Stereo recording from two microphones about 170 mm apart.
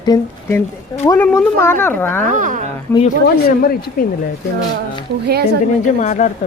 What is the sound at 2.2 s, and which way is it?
Speech, 50° right (ahead or behind).